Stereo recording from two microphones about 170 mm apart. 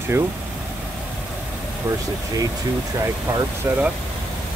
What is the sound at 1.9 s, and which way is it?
Speech, 15° right (ahead or behind).